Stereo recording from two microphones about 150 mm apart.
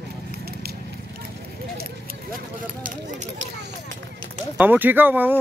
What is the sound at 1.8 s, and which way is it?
Speech, 75° right (ahead or behind).